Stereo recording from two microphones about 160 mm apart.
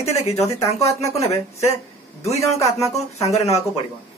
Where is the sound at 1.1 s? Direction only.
40° left (ahead or behind).